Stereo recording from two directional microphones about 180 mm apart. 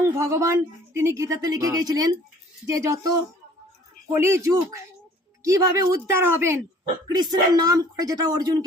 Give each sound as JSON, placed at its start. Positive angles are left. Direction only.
{"t": 0.0, "sound": "speech", "side_deg": -15}